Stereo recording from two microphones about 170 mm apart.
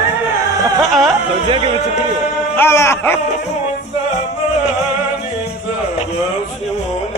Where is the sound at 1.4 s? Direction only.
30° right (ahead or behind).